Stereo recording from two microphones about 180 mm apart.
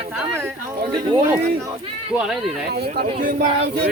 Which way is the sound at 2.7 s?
65° right (ahead or behind).